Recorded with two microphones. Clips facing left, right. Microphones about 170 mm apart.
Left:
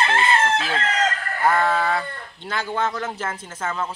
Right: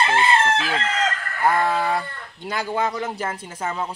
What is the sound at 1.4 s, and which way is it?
Speech, 15° right (ahead or behind).